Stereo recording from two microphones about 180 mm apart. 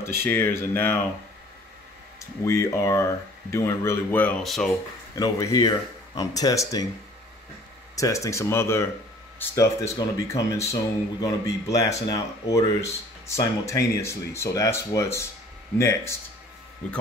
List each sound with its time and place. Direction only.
0.0 s speech: 15° left (ahead or behind)
2.1 s speech: 15° left (ahead or behind)
5.1 s speech: 20° left (ahead or behind)
7.9 s speech: 15° left (ahead or behind)